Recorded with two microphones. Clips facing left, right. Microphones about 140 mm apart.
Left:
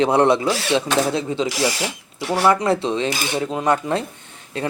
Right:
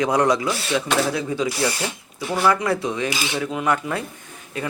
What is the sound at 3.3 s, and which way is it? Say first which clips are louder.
Speech: left 3 dB; 30° left (ahead or behind).